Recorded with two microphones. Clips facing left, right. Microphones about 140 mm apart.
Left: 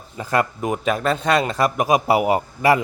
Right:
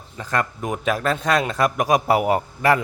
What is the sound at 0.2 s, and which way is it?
A man's voice, 10° left (ahead or behind).